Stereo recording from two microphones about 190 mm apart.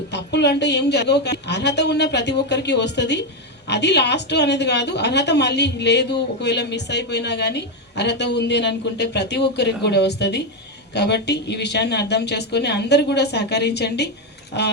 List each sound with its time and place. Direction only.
0.1 s a woman's voice: 65° left (ahead or behind)